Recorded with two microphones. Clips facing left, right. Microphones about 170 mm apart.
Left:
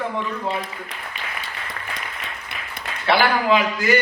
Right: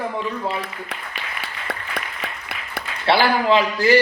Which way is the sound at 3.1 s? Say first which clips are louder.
Right 1 dB; 30° right (ahead or behind).